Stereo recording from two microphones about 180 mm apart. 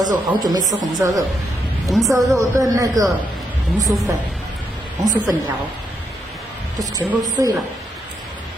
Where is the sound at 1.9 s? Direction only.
Centre (ahead or behind).